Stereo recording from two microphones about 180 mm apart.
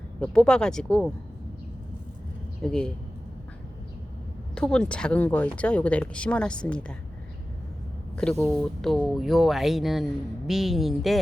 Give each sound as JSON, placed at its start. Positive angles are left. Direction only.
{"t": 0.2, "sound": "speech", "side_deg": 5}
{"t": 2.6, "sound": "speech", "side_deg": 5}
{"t": 4.5, "sound": "speech", "side_deg": 5}
{"t": 8.1, "sound": "speech", "side_deg": 5}